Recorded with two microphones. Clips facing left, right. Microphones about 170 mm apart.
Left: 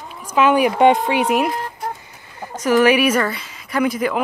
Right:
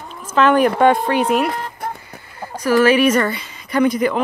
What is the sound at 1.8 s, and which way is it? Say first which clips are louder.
Vehicle: right 1 dB; 55° right (ahead or behind).